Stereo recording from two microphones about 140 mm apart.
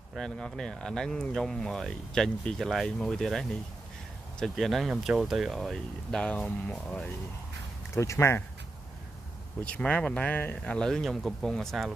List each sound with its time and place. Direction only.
0.1 s speech: 5° left (ahead or behind)
7.9 s speech: 20° left (ahead or behind)
9.7 s speech: 10° left (ahead or behind)